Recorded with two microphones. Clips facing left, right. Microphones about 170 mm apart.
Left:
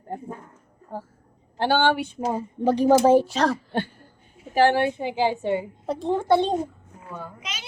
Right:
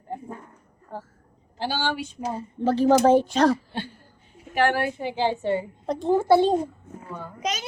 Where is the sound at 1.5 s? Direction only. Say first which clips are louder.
Left 6 dB; 60° left (ahead or behind).